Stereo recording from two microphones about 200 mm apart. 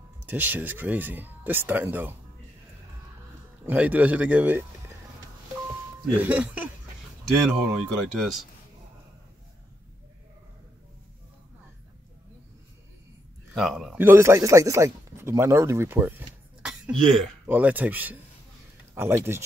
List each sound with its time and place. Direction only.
0.3 s speech: 10° right (ahead or behind)
3.6 s speech: 10° right (ahead or behind)
6.0 s speech: 10° right (ahead or behind)
13.5 s speech: centre (ahead or behind)